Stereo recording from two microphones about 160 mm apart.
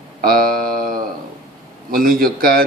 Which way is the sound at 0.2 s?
65° right (ahead or behind).